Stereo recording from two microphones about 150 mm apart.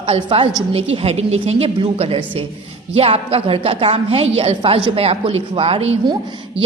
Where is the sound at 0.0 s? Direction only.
35° right (ahead or behind).